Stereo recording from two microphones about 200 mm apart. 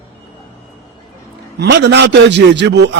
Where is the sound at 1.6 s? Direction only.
60° right (ahead or behind).